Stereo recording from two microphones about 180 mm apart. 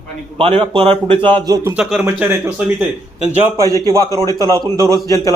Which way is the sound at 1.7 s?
5° right (ahead or behind).